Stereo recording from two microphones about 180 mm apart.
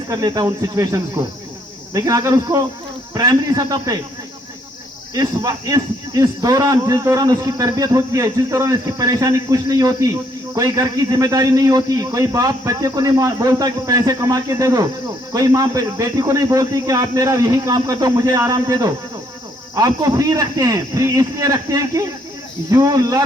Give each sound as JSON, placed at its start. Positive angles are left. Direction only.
{"t": 0.1, "sound": "speech", "side_deg": -20}
{"t": 5.1, "sound": "speech", "side_deg": -20}